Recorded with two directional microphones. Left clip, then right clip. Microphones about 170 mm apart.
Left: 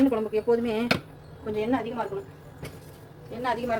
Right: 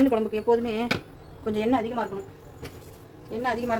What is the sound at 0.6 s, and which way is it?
Speech, 10° right (ahead or behind).